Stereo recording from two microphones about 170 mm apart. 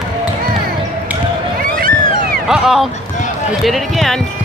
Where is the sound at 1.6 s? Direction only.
60° right (ahead or behind).